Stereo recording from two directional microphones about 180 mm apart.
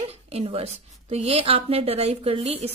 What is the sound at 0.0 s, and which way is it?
A woman's voice, 35° right (ahead or behind).